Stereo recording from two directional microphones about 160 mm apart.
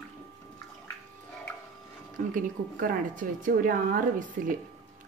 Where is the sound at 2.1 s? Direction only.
55° right (ahead or behind).